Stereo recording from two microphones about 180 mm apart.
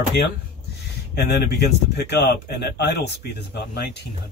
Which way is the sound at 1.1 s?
60° left (ahead or behind).